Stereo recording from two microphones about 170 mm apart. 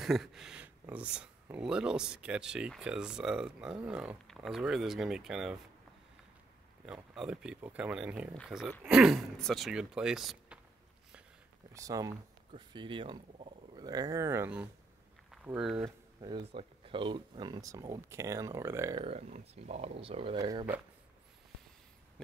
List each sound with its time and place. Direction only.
0.0 s speech: centre (ahead or behind)
7.2 s speech: 5° right (ahead or behind)
11.7 s speech: 20° right (ahead or behind)
16.2 s speech: 25° right (ahead or behind)
19.0 s speech: 40° right (ahead or behind)
20.3 s speech: 25° right (ahead or behind)